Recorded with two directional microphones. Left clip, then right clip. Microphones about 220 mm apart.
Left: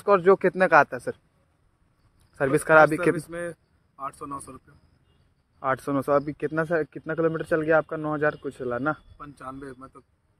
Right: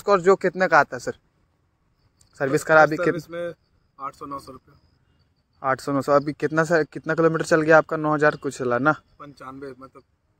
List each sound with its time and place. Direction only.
0.0 s a man's voice: 5° right (ahead or behind)
2.3 s a man's voice: centre (ahead or behind)
5.6 s speech: 5° right (ahead or behind); by 9.0 s 20° right (ahead or behind)
9.2 s a man's voice: centre (ahead or behind)